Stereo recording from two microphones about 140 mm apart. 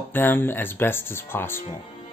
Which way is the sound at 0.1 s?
15° left (ahead or behind).